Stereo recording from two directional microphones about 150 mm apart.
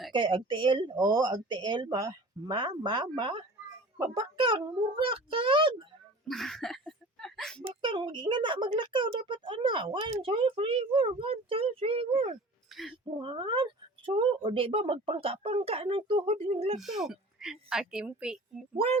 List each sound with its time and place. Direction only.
0.1 s a woman's voice: 30° right (ahead or behind)
6.2 s a sound: 5° left (ahead or behind)
7.6 s a woman's voice: 35° right (ahead or behind)
16.8 s speech: centre (ahead or behind)